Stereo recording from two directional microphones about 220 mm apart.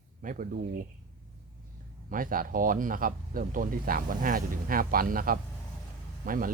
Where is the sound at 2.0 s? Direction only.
40° right (ahead or behind).